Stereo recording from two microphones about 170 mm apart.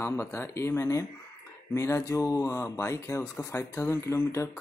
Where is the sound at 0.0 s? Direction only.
15° left (ahead or behind).